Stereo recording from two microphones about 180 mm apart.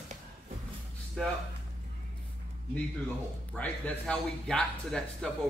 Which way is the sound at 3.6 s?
5° left (ahead or behind).